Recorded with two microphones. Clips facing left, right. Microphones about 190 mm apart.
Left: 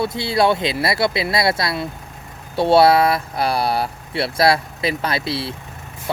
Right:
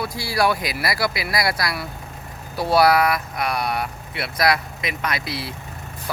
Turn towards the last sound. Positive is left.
turn(degrees=30)  # may be behind; listen again after turning